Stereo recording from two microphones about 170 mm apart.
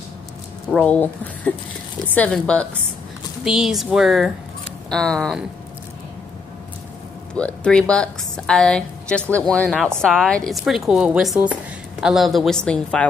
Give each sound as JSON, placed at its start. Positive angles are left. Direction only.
{"t": 0.7, "sound": "a woman's voice", "side_deg": 10}
{"t": 7.3, "sound": "a woman's voice", "side_deg": 5}